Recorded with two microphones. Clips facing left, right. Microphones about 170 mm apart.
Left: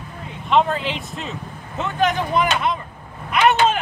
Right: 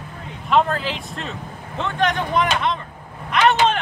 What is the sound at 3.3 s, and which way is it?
Vehicle, 5° left (ahead or behind).